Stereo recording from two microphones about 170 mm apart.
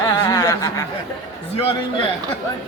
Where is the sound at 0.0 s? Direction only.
20° left (ahead or behind).